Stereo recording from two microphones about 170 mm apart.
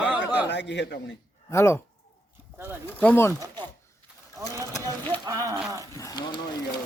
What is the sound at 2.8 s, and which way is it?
Speech, 10° left (ahead or behind).